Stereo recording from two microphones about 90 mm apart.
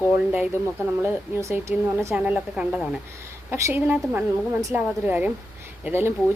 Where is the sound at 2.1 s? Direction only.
15° right (ahead or behind).